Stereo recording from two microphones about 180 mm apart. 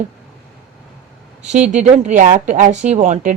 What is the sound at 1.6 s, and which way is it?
A woman's voice, 40° right (ahead or behind).